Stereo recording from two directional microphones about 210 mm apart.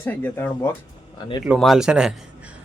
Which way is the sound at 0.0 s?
10° left (ahead or behind).